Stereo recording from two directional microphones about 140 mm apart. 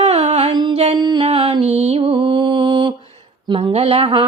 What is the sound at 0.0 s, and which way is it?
Music, 50° right (ahead or behind).